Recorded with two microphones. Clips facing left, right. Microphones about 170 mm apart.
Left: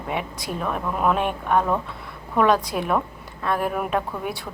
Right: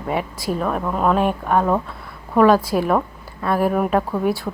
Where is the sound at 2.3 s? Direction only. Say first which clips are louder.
Right 5 dB; 5° right (ahead or behind).